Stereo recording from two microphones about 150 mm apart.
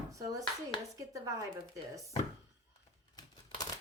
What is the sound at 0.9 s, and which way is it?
Speech, 20° right (ahead or behind).